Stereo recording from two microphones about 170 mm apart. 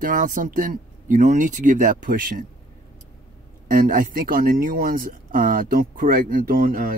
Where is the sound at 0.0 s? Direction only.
55° right (ahead or behind).